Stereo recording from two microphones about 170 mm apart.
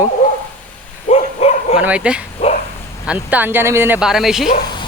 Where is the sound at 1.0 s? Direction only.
40° left (ahead or behind).